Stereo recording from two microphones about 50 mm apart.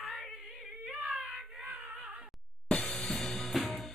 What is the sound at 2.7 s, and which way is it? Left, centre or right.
Music, left.